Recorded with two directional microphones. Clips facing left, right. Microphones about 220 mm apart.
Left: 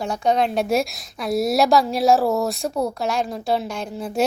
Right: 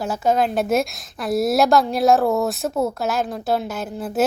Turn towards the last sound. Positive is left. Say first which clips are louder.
# right 1 dB
turn(degrees=-5)  # may be behind; listen again after turning